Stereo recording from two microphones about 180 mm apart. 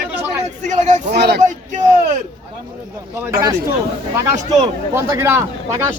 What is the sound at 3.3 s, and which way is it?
Speech, 20° right (ahead or behind).